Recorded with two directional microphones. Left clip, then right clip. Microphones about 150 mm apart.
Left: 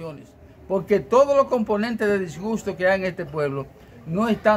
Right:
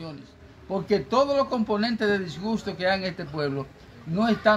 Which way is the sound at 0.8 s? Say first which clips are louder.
Left 5 dB; 35° left (ahead or behind).